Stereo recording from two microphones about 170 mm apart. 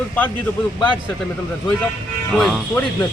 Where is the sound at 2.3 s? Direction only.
Centre (ahead or behind).